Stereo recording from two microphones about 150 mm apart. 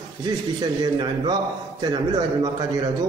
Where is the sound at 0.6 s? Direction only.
30° right (ahead or behind).